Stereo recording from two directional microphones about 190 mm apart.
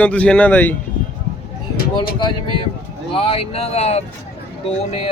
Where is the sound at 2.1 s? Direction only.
25° left (ahead or behind).